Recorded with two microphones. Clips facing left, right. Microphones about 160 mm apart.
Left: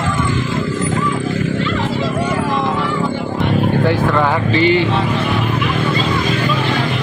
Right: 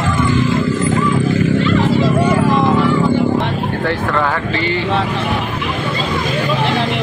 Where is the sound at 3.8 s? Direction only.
15° left (ahead or behind).